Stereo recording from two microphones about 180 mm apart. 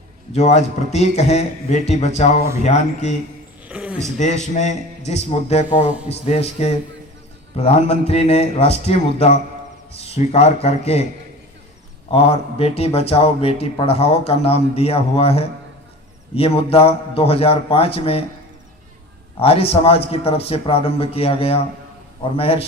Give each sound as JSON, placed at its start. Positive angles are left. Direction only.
{"t": 0.3, "sound": "speech", "side_deg": 35}
{"t": 3.7, "sound": "a sound", "side_deg": -5}
{"t": 4.2, "sound": "speech", "side_deg": 40}
{"t": 12.1, "sound": "speech", "side_deg": 35}
{"t": 19.4, "sound": "speech", "side_deg": 35}